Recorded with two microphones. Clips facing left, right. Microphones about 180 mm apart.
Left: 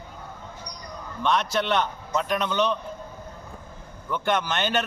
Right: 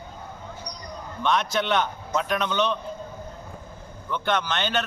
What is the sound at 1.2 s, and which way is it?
A man's voice, centre (ahead or behind).